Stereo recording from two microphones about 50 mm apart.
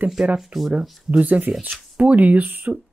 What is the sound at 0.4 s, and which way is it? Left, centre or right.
Speech, centre.